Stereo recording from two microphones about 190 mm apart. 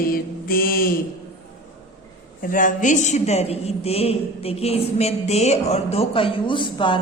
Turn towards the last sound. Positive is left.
turn(degrees=25)  # may be behind; listen again after turning